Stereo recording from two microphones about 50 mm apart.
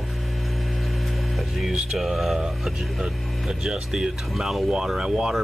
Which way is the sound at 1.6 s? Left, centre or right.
Centre.